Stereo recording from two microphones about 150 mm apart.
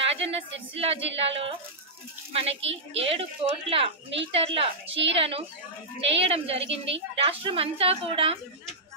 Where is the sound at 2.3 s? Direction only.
40° right (ahead or behind).